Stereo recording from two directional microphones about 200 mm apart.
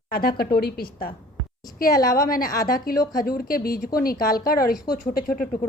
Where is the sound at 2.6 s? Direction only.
45° left (ahead or behind).